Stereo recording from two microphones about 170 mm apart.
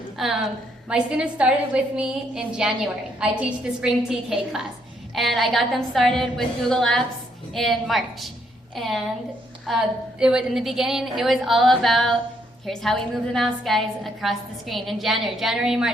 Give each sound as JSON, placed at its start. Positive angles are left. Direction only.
{"t": 0.2, "sound": "a woman's voice", "side_deg": 0}